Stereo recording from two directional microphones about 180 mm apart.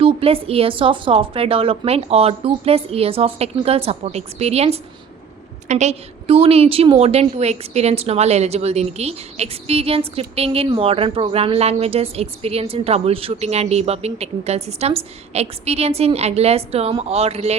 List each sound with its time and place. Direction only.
0.0 s speech: 30° right (ahead or behind)